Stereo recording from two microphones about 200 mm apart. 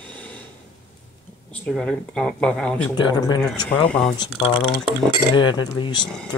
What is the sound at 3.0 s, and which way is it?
Cutlery, 20° left (ahead or behind).